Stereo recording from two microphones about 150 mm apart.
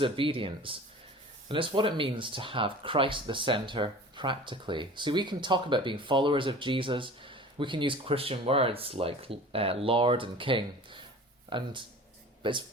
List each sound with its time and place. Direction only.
0.0 s speech: 35° right (ahead or behind)